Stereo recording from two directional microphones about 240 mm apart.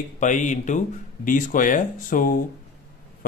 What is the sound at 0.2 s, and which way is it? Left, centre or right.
Speech, left.